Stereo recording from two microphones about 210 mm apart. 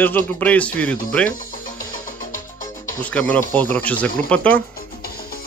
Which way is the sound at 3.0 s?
5° left (ahead or behind).